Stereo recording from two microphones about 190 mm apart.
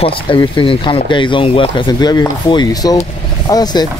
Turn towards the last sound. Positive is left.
turn(degrees=20)  # may be behind; listen again after turning